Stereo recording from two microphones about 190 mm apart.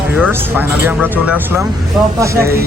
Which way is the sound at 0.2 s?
10° right (ahead or behind).